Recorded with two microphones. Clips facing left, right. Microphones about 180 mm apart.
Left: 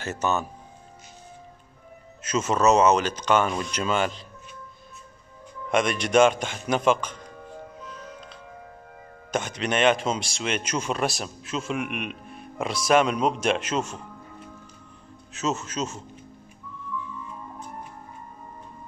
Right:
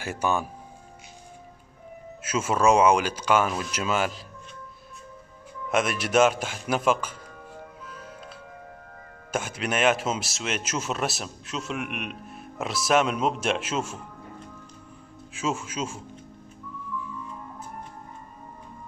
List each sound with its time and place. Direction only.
0.0 s speech: 10° right (ahead or behind)
2.2 s speech: 10° right (ahead or behind)
5.7 s speech: 5° right (ahead or behind)
7.8 s music: 5° right (ahead or behind)
9.3 s speech: 5° right (ahead or behind)
15.3 s speech: 10° right (ahead or behind)